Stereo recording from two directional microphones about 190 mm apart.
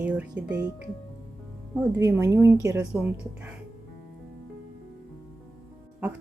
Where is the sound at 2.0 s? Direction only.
15° right (ahead or behind).